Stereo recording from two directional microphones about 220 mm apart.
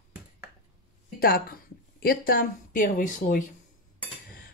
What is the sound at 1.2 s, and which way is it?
A woman's voice, 40° left (ahead or behind).